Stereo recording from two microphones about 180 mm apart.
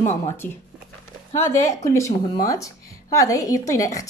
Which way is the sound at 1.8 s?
15° left (ahead or behind).